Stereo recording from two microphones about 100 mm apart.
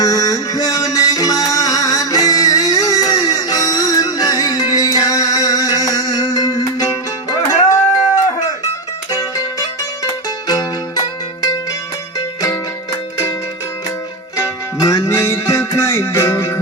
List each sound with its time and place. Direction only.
0.0 s music: 35° left (ahead or behind)
14.3 s music: 30° left (ahead or behind)